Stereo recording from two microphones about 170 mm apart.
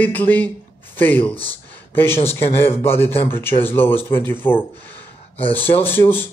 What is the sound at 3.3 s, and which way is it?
A man's voice, 15° left (ahead or behind).